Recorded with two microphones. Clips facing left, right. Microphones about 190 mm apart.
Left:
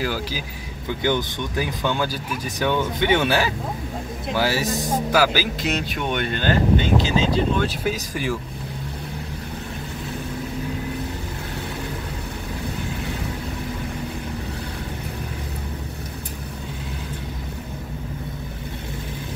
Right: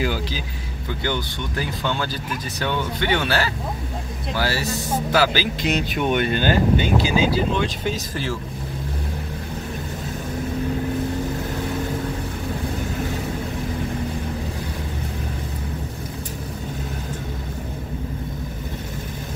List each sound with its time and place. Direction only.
0.0 s speech: 5° left (ahead or behind)
1.0 s speech: 15° left (ahead or behind); by 7.6 s 5° right (ahead or behind)
7.6 s speech: 10° left (ahead or behind)